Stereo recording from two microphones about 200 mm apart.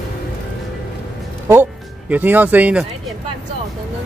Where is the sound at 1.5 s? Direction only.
10° right (ahead or behind).